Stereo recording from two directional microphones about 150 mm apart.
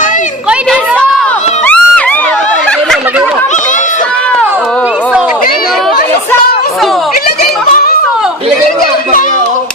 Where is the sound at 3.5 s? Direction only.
55° left (ahead or behind).